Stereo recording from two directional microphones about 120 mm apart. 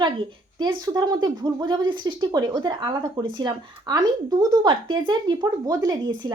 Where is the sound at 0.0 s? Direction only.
40° right (ahead or behind).